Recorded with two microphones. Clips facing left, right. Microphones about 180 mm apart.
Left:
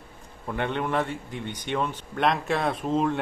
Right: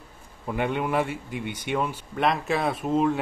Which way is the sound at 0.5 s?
5° right (ahead or behind).